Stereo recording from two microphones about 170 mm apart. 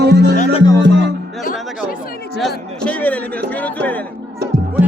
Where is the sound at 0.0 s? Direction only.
80° right.